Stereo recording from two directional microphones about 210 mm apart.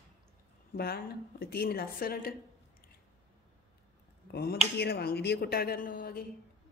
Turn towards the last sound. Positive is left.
turn(degrees=45)  # may be behind; listen again after turning